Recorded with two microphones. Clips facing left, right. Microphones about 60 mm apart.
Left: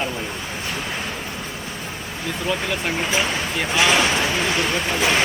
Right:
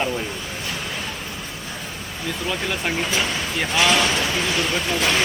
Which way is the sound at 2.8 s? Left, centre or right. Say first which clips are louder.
Left 1 dB; centre.